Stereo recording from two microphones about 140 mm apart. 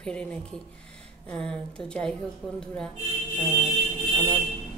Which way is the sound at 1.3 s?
5° left (ahead or behind).